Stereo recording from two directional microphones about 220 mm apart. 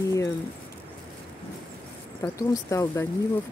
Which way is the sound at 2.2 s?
15° left (ahead or behind).